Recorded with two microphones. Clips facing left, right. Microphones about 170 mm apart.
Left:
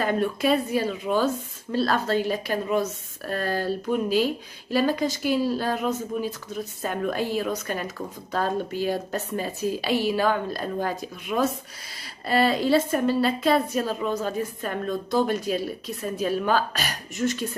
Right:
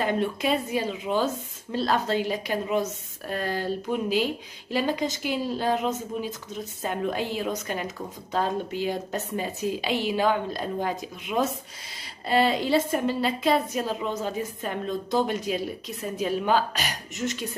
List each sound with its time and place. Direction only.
0.0 s a woman's voice: 20° right (ahead or behind)